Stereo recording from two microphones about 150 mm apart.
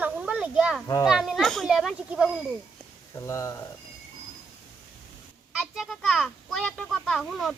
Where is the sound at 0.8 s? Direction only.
25° left (ahead or behind).